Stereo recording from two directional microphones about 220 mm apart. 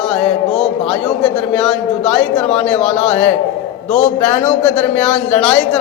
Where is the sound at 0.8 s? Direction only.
5° left (ahead or behind).